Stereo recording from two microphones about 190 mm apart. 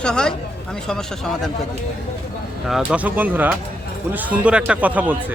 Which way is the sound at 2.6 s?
5° right (ahead or behind).